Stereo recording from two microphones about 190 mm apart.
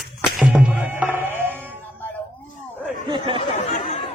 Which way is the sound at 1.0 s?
10° right (ahead or behind).